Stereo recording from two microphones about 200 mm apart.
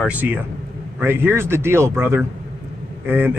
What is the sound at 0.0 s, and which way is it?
A man's voice, 10° right (ahead or behind).